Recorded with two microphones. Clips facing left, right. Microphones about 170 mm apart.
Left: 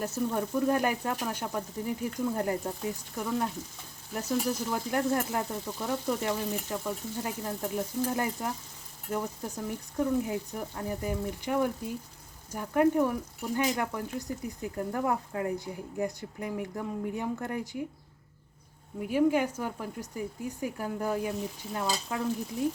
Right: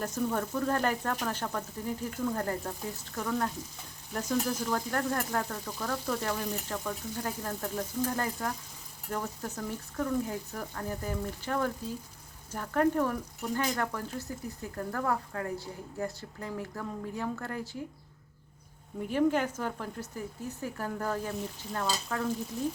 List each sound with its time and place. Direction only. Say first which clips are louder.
0.0 s speech: left 1 dB; 10° left (ahead or behind)
18.9 s speech: left 2 dB; 10° left (ahead or behind)